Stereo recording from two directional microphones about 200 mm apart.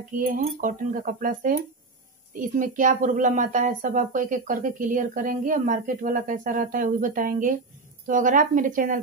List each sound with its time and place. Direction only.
0.4 s a woman's voice: 40° right (ahead or behind)